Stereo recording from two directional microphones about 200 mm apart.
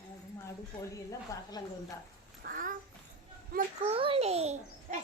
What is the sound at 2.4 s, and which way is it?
Babbling, 45° right (ahead or behind).